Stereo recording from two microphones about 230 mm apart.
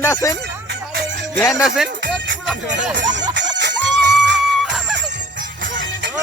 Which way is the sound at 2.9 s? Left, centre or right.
Right.